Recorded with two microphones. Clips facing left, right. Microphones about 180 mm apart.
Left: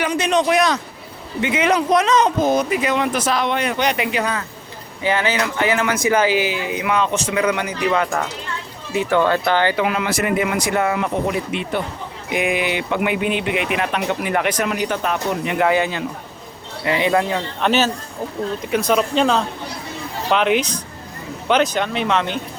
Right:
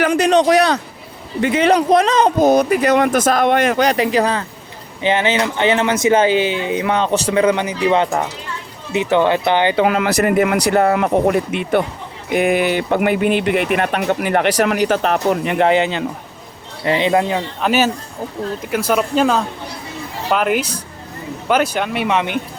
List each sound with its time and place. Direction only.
0.0 s speech: 45° right (ahead or behind)
3.8 s speech: 40° right (ahead or behind)
5.0 s speech: 20° right (ahead or behind)
9.8 s speech: 40° right (ahead or behind)
10.6 s speech: 40° right (ahead or behind)
10.9 s speech: 50° right (ahead or behind)
12.3 s speech: 40° right (ahead or behind)
14.5 s speech: 85° right
15.3 s speech: 40° right (ahead or behind)
15.6 s speech: 25° right (ahead or behind)
17.6 s speech: 10° right (ahead or behind)